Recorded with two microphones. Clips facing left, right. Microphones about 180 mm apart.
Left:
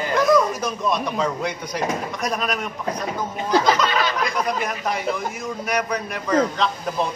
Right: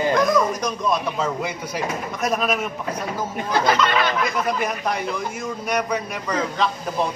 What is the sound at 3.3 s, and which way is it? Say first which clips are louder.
Speech: left 2 dB; 55° right (ahead or behind).